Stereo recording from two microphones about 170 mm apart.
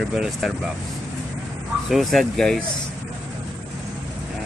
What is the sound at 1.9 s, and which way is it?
Speech, centre (ahead or behind).